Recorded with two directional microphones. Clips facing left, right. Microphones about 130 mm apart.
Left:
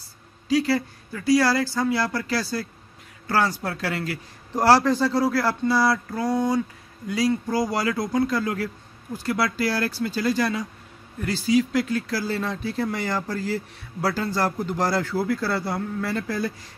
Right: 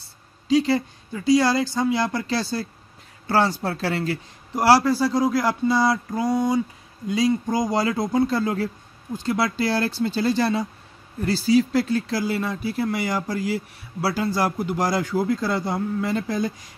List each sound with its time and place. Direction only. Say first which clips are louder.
0.0 s speech: left 1 dB; 20° right (ahead or behind)
4.6 s speech: right 1 dB; 10° right (ahead or behind); by 12.2 s 30° right (ahead or behind)
12.2 s speech: right 2 dB; 10° right (ahead or behind)